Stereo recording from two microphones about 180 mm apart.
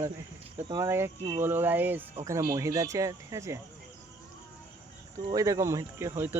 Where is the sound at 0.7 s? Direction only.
15° right (ahead or behind).